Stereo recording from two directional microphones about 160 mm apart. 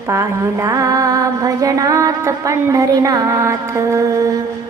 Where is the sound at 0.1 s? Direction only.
20° right (ahead or behind).